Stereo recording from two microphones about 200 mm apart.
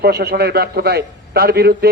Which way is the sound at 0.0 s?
50° right (ahead or behind).